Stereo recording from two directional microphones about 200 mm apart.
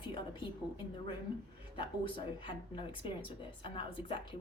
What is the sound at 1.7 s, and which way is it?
Speech, 25° left (ahead or behind).